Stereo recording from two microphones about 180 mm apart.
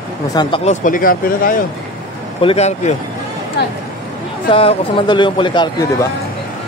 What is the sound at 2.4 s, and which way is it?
Speech, 35° left (ahead or behind).